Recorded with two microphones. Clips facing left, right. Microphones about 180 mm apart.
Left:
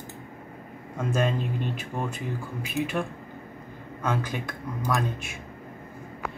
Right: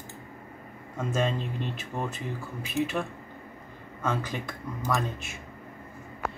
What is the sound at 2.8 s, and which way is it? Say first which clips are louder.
Speech: right 1 dB; 15° left (ahead or behind).